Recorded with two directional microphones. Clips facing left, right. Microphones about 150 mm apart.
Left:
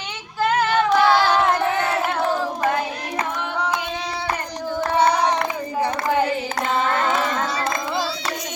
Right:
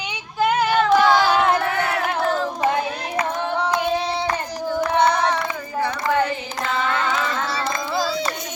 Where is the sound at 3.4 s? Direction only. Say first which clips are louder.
Right 3 dB; 30° right (ahead or behind).